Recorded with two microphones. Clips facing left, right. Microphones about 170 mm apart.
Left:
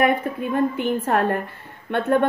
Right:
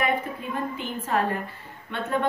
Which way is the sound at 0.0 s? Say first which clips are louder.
Left 6 dB; 55° left (ahead or behind).